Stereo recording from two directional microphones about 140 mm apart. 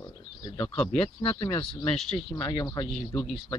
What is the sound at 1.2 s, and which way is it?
Speech, 35° left (ahead or behind).